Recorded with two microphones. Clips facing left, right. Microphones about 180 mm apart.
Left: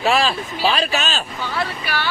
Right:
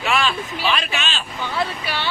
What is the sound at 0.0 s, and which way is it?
A man's voice, 35° left (ahead or behind).